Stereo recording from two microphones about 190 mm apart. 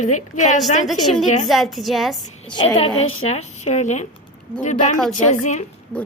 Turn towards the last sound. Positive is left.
turn(degrees=40)  # may be behind; listen again after turning